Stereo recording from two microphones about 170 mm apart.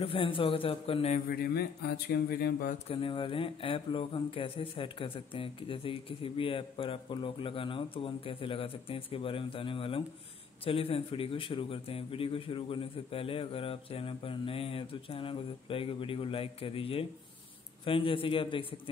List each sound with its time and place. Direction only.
0.0 s speech: 30° left (ahead or behind)
1.1 s speech: 60° left (ahead or behind)
2.9 s speech: 30° left (ahead or behind)